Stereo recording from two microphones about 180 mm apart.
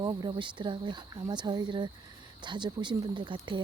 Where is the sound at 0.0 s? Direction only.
20° right (ahead or behind).